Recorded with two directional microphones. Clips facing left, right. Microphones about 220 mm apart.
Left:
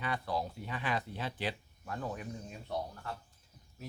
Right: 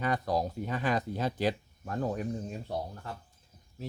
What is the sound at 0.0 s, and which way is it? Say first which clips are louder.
Speech: right 6 dB; 40° right (ahead or behind).